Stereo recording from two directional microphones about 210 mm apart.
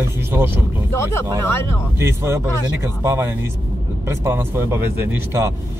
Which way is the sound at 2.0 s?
10° right (ahead or behind).